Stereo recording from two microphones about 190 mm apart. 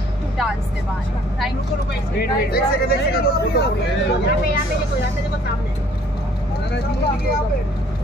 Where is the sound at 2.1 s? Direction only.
55° left (ahead or behind).